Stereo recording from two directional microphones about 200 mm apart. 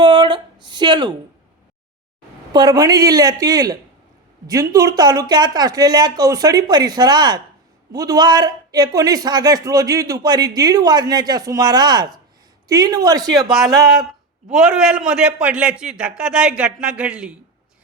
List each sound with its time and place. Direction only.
0.0 s a sound: 20° right (ahead or behind)
2.5 s a man's voice: 20° right (ahead or behind)
14.5 s a man's voice: centre (ahead or behind)